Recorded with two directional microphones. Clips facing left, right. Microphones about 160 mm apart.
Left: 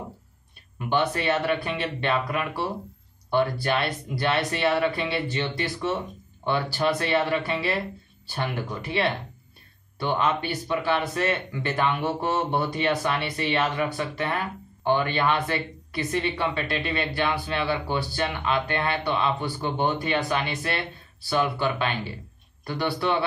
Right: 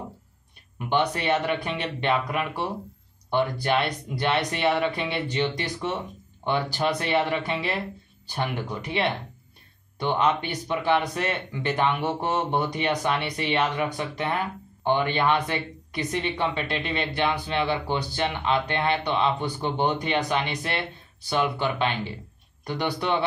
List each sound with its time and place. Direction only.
0.7 s speech: 20° right (ahead or behind)